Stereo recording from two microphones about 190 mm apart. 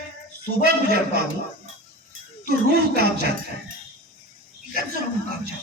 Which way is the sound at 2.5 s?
55° right (ahead or behind).